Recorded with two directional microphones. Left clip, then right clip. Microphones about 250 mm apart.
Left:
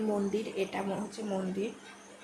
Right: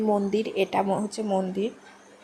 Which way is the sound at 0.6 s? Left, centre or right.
Right.